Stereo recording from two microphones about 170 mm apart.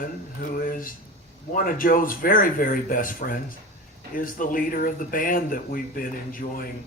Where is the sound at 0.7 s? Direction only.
55° left (ahead or behind).